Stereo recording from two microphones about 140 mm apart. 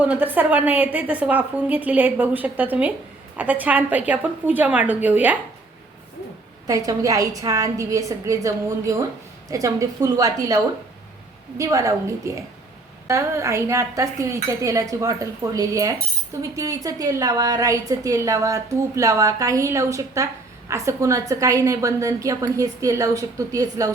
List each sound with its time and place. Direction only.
0.0 s a woman's voice: 10° right (ahead or behind)
6.7 s a woman's voice: 25° right (ahead or behind)